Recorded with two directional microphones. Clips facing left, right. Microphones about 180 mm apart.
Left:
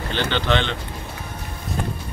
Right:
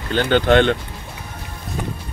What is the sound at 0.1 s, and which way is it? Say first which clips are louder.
Speech: right 7 dB; 50° right (ahead or behind).